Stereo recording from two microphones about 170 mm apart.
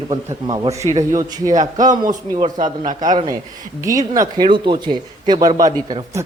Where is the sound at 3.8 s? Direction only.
20° right (ahead or behind).